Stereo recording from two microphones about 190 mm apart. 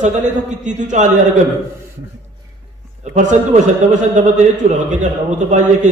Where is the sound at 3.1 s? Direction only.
40° right (ahead or behind).